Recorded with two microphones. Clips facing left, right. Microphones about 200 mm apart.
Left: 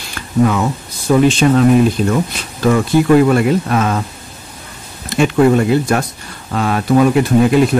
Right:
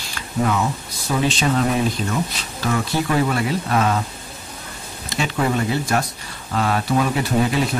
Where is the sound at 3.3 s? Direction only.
50° left (ahead or behind).